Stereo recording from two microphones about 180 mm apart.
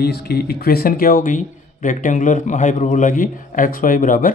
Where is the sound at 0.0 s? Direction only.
60° left (ahead or behind).